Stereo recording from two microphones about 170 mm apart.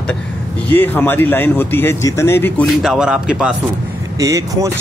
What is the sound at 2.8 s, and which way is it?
Speech, 5° right (ahead or behind).